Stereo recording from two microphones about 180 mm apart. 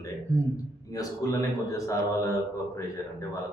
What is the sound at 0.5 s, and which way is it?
A man's voice, 20° left (ahead or behind).